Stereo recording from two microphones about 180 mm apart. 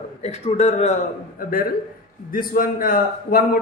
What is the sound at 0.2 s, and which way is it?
Speech, 35° left (ahead or behind).